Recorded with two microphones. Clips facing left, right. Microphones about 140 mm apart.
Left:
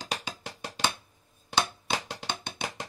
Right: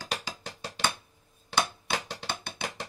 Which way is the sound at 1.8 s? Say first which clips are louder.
Left 1 dB; 20° left (ahead or behind).